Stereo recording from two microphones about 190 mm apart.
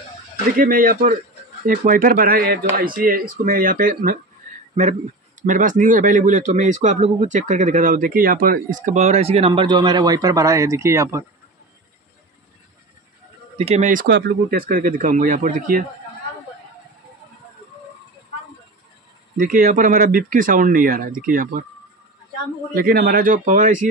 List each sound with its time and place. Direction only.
0.6 s speech: 45° right (ahead or behind)
5.4 s speech: 45° right (ahead or behind); by 11.2 s 15° right (ahead or behind)
13.6 s speech: 35° right (ahead or behind)
14.0 s speech: 60° right (ahead or behind); by 15.8 s 45° right (ahead or behind)
19.3 s speech: 50° right (ahead or behind)
22.8 s speech: 50° right (ahead or behind)